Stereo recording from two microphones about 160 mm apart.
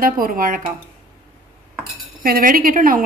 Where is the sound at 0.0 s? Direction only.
60° right (ahead or behind).